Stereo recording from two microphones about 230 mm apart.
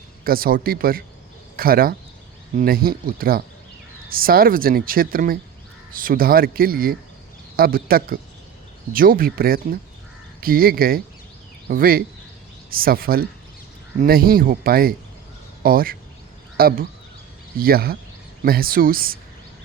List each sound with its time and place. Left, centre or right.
0.3 s speech: right